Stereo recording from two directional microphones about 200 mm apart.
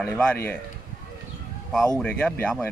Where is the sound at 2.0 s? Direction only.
5° left (ahead or behind).